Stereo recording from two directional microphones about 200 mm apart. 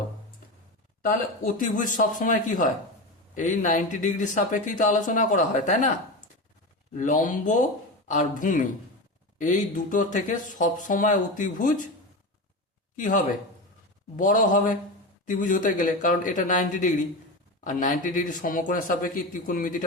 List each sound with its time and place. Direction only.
1.2 s speech: 40° left (ahead or behind)
6.9 s speech: 40° left (ahead or behind)
13.0 s speech: 40° left (ahead or behind)